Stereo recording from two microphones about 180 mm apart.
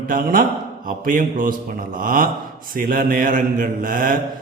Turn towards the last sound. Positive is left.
turn(degrees=-50)  # may be behind; listen again after turning